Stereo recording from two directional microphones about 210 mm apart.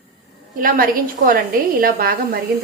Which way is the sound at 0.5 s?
40° right (ahead or behind).